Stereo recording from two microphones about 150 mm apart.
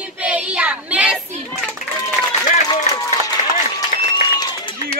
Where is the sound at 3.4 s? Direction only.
45° left (ahead or behind).